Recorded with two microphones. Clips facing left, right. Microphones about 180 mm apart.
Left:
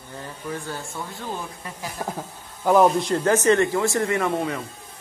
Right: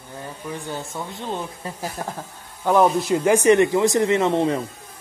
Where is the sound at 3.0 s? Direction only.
10° right (ahead or behind); by 4.6 s 30° right (ahead or behind).